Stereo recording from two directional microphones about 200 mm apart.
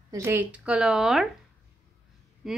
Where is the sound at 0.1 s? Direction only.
10° right (ahead or behind).